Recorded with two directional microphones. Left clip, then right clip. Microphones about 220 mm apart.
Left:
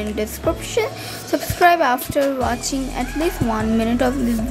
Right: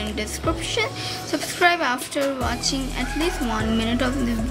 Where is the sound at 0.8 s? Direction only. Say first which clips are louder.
Left 4 dB; 15° left (ahead or behind).